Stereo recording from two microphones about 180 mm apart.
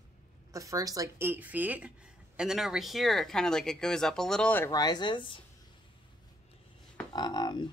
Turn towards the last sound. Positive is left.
turn(degrees=25)  # may be behind; listen again after turning